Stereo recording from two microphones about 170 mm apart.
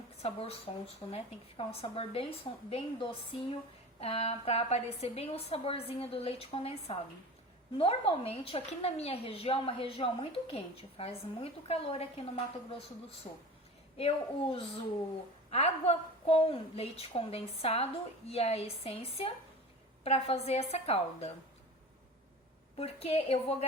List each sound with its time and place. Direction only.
0.2 s speech: 35° left (ahead or behind)
14.0 s speech: 35° left (ahead or behind)
22.8 s speech: 35° left (ahead or behind)